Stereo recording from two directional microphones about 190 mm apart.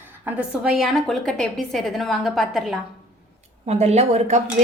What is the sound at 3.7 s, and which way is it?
Speech, 35° right (ahead or behind).